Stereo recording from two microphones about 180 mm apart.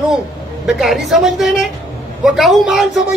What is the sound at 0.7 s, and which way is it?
A man's voice, centre (ahead or behind).